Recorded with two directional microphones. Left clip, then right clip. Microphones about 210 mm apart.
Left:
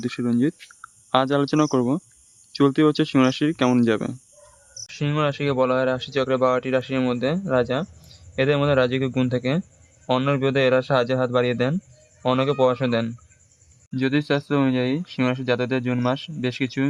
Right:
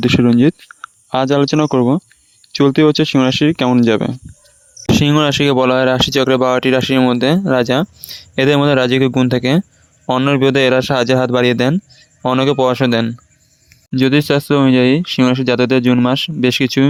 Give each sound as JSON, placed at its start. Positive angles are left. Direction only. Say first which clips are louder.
{"t": 0.0, "sound": "speech", "louder": "right 12 dB", "side_deg": -35}